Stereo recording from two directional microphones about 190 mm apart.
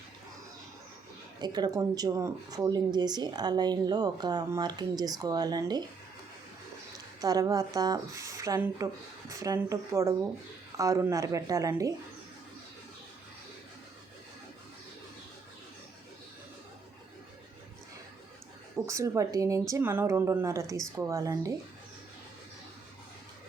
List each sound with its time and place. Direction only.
1.4 s speech: 20° right (ahead or behind)
7.2 s speech: 20° right (ahead or behind)
18.9 s speech: 15° right (ahead or behind)